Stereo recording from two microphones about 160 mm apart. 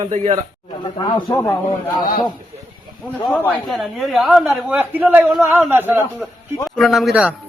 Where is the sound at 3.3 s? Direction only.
10° left (ahead or behind); by 6.0 s 15° right (ahead or behind).